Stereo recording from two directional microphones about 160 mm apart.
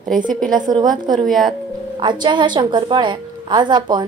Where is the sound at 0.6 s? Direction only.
25° right (ahead or behind).